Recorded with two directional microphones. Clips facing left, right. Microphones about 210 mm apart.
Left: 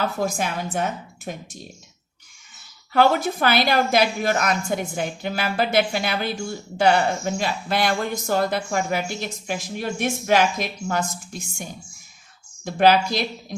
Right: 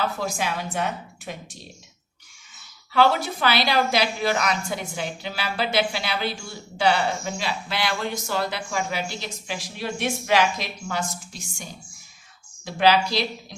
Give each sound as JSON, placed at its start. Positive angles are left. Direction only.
{"t": 0.0, "sound": "a woman's voice", "side_deg": 50}
{"t": 2.9, "sound": "a woman's voice", "side_deg": 50}